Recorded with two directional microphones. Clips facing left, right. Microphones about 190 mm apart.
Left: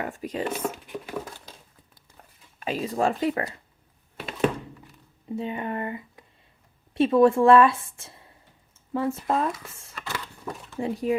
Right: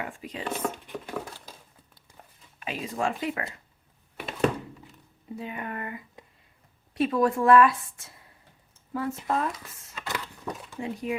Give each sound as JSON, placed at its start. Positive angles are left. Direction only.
{"t": 0.0, "sound": "speech", "side_deg": 45}
{"t": 0.4, "sound": "speech", "side_deg": 5}
{"t": 2.6, "sound": "speech", "side_deg": 35}
{"t": 5.4, "sound": "a woman's voice", "side_deg": 25}
{"t": 9.9, "sound": "a sound", "side_deg": -15}
{"t": 10.8, "sound": "speech", "side_deg": 35}